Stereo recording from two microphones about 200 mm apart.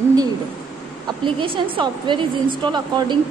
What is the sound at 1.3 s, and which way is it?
Speech, 25° right (ahead or behind).